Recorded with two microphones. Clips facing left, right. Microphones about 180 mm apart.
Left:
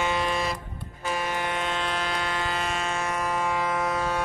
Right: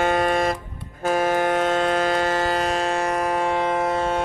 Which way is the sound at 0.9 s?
50° right (ahead or behind).